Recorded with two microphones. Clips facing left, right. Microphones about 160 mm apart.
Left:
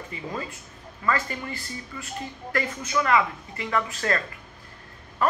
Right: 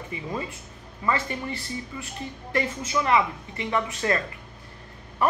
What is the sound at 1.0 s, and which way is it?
Speech, 25° right (ahead or behind).